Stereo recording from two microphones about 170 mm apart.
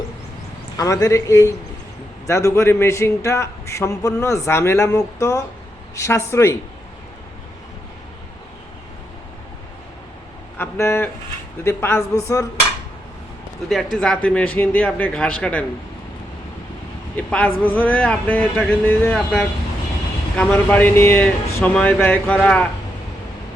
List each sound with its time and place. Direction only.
0.8 s a man's voice: 20° left (ahead or behind)
10.6 s a sound: 15° left (ahead or behind)
11.6 s a man's voice: 15° left (ahead or behind)
13.9 s a man's voice: 5° left (ahead or behind)
17.2 s a man's voice: 10° left (ahead or behind)